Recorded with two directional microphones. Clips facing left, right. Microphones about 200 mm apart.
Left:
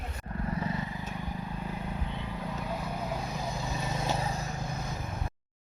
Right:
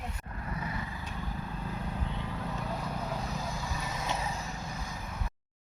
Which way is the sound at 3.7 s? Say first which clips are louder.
Left 5 dB; 25° left (ahead or behind).